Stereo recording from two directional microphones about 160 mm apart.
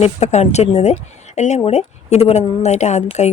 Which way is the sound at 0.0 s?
45° left (ahead or behind).